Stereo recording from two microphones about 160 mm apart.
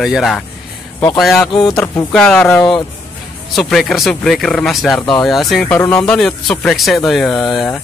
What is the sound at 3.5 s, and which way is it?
A man's voice, centre (ahead or behind).